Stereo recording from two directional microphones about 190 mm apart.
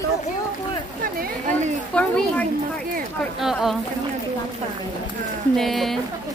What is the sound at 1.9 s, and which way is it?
Speech, 5° left (ahead or behind).